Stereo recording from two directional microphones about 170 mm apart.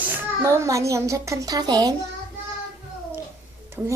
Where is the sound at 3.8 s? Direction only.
5° right (ahead or behind).